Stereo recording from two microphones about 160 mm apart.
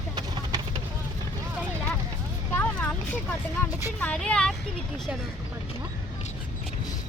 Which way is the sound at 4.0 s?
5° left (ahead or behind).